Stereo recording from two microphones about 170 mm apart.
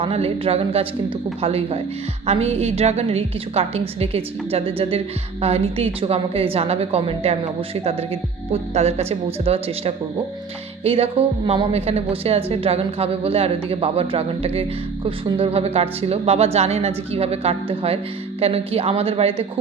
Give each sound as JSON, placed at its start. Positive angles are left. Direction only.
{"t": 0.0, "sound": "a woman's voice", "side_deg": -35}